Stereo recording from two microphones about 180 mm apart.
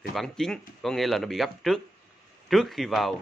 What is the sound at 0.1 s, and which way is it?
Speech, centre (ahead or behind).